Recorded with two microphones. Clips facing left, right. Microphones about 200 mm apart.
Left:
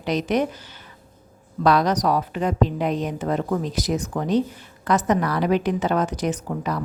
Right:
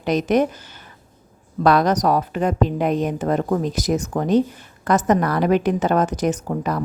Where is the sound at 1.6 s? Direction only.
50° right (ahead or behind).